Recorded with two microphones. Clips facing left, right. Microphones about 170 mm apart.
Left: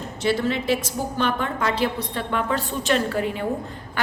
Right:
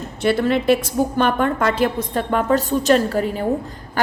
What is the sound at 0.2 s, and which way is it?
A woman's voice, 55° right (ahead or behind).